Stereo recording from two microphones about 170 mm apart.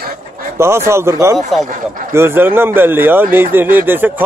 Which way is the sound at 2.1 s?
15° right (ahead or behind).